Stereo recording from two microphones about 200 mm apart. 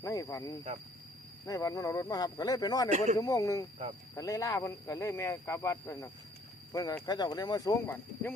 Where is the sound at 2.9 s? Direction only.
35° right (ahead or behind).